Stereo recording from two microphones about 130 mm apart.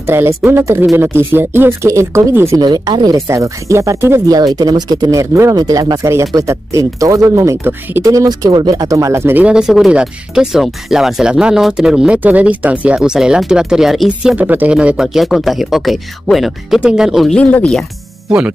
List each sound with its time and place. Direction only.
0.0 s speech: 20° right (ahead or behind)
2.6 s speech: 35° right (ahead or behind); by 17.8 s 5° left (ahead or behind)